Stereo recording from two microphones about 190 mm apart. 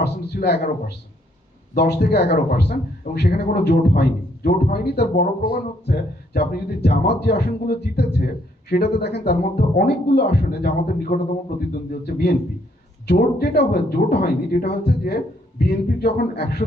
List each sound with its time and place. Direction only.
0.0 s a man's voice: 60° left (ahead or behind)